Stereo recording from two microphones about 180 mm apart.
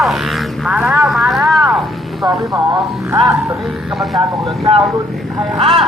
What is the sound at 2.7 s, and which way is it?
Speech, 20° right (ahead or behind).